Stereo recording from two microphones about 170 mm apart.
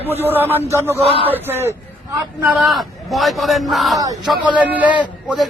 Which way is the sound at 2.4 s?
5° right (ahead or behind).